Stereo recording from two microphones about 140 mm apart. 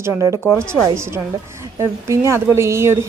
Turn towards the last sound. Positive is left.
turn(degrees=-20)  # may be behind; listen again after turning